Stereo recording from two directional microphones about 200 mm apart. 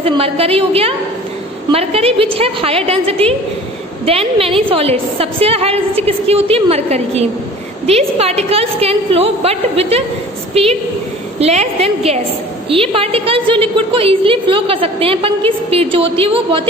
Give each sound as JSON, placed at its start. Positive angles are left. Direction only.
{"t": 0.0, "sound": "a woman's voice", "side_deg": -30}